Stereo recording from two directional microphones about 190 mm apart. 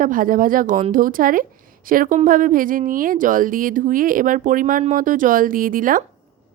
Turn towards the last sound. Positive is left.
turn(degrees=-45)  # may be behind; listen again after turning